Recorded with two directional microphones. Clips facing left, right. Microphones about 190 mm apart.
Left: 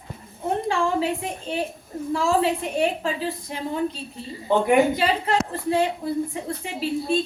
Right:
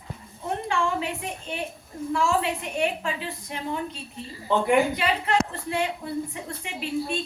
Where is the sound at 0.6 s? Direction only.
35° left (ahead or behind).